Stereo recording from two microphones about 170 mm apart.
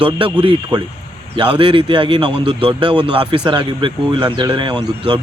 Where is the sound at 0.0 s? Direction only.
30° right (ahead or behind).